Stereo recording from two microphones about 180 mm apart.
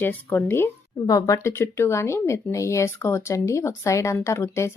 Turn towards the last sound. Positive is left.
turn(degrees=15)  # may be behind; listen again after turning